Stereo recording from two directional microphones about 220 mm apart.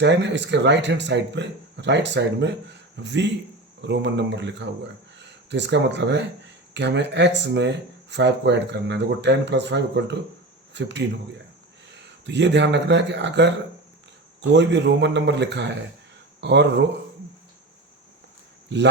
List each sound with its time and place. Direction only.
0.0 s speech: 50° right (ahead or behind)
14.5 s speech: 55° right (ahead or behind)